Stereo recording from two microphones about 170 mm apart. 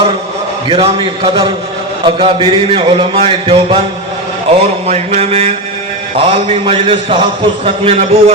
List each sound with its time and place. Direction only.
0.7 s a man's voice: 30° right (ahead or behind)